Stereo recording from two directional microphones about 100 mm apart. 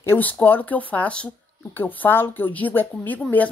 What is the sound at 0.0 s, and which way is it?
A woman's voice, 20° left (ahead or behind).